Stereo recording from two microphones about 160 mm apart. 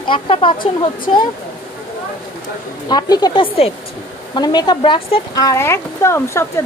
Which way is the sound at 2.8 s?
25° left (ahead or behind).